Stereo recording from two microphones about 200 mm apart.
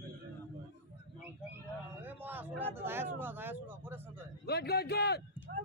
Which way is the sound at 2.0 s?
10° right (ahead or behind).